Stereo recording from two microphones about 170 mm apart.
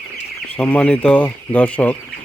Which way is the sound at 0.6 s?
5° left (ahead or behind).